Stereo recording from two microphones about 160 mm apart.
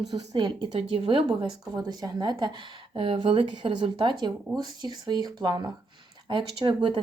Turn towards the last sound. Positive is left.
turn(degrees=-30)  # may be behind; listen again after turning